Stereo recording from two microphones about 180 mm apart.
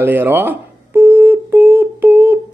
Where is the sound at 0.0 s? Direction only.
10° right (ahead or behind).